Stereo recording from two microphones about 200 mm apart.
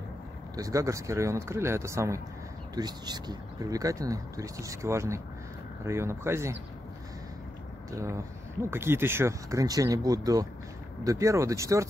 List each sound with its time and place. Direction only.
0.6 s speech: 15° right (ahead or behind)
7.9 s speech: 15° right (ahead or behind)